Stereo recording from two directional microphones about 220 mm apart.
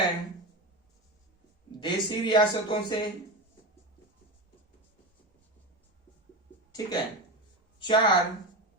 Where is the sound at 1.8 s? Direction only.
20° left (ahead or behind).